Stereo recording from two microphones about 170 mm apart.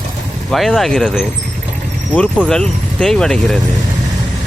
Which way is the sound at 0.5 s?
Centre (ahead or behind).